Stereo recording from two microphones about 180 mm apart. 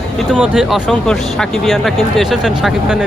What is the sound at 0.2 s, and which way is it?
Speech, 5° right (ahead or behind).